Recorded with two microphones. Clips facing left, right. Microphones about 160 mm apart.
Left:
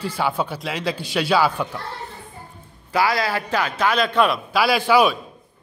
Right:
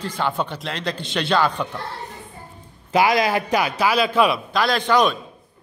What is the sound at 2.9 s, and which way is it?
A man's voice, 20° right (ahead or behind).